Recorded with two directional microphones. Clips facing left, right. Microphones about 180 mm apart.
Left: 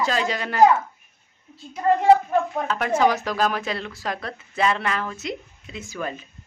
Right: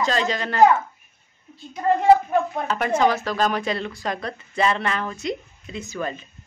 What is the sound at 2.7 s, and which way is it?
Speech, 5° left (ahead or behind).